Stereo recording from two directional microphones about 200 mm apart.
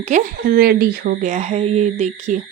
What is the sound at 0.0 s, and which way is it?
Speech, 40° right (ahead or behind).